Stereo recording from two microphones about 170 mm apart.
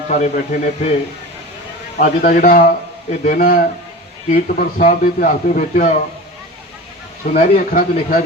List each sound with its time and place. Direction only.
0.1 s a man's voice: 45° left (ahead or behind)
2.0 s a man's voice: 50° left (ahead or behind)
7.3 s a man's voice: 55° left (ahead or behind)